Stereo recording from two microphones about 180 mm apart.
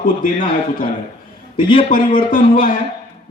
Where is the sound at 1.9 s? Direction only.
50° left (ahead or behind).